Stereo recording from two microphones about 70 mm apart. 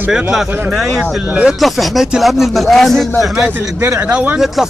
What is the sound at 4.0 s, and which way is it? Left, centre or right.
Speech, centre.